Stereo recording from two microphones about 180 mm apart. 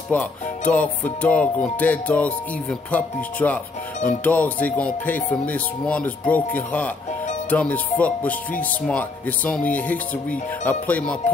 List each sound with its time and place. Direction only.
0.1 s speech: 10° left (ahead or behind)